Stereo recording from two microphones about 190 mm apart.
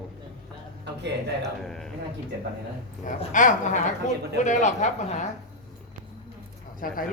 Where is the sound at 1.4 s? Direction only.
Centre (ahead or behind).